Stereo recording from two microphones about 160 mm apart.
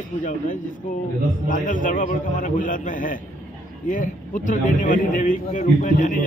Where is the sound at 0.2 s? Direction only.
55° left (ahead or behind).